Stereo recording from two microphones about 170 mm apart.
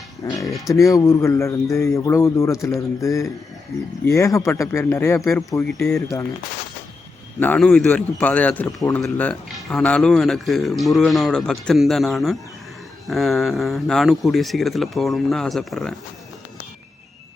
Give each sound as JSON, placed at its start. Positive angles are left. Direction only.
{"t": 0.3, "sound": "speech", "side_deg": 20}
{"t": 7.3, "sound": "a man's voice", "side_deg": 10}